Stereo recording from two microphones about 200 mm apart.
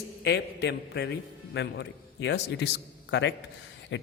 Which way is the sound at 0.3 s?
55° left (ahead or behind).